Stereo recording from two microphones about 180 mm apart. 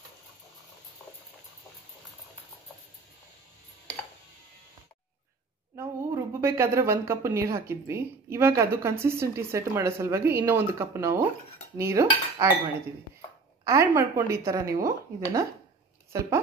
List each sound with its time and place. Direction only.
5.8 s a woman's voice: 15° right (ahead or behind)
11.7 s cutlery: 15° right (ahead or behind)
13.7 s a woman's voice: 15° right (ahead or behind)